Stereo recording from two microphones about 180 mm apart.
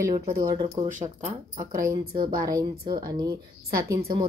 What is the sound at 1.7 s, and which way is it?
Speech, 50° right (ahead or behind).